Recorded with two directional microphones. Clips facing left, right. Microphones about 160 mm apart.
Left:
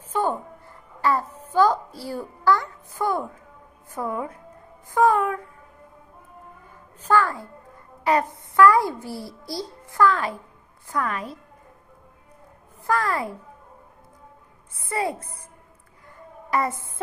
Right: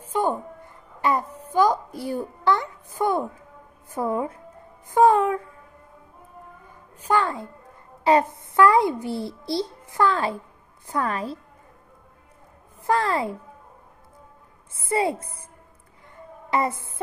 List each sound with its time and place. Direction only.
0.1 s a sound: 10° right (ahead or behind)
1.0 s babbling: 15° right (ahead or behind)
3.9 s a child's voice: 25° right (ahead or behind)
7.0 s a child's voice: 20° right (ahead or behind)
12.8 s a child's voice: 25° right (ahead or behind)
14.7 s a child's voice: 25° right (ahead or behind)
16.4 s child singing: 25° right (ahead or behind)